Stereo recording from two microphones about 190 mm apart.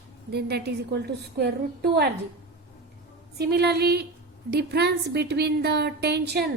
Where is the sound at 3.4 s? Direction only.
60° right (ahead or behind).